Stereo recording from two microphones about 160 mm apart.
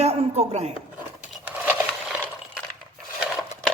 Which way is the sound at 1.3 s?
5° right (ahead or behind).